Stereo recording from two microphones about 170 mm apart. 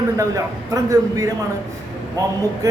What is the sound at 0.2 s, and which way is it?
Speech, 20° right (ahead or behind).